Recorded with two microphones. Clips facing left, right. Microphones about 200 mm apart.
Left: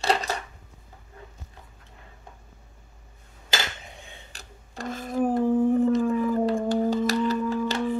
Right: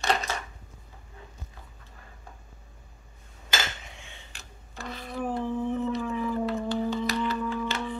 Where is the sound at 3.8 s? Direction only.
35° left (ahead or behind).